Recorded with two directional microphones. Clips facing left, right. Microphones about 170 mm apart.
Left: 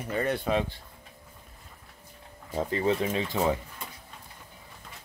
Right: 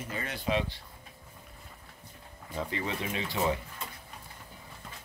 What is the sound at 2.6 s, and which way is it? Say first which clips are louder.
Speech: left 8 dB; 40° left (ahead or behind).